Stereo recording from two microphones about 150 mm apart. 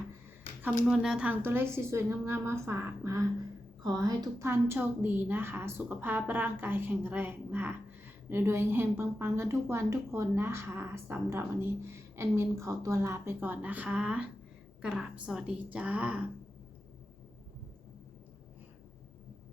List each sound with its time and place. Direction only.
0.9 s a woman's voice: 5° right (ahead or behind)